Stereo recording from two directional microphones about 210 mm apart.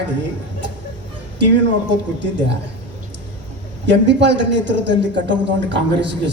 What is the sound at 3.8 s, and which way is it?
A man's voice, 55° right (ahead or behind).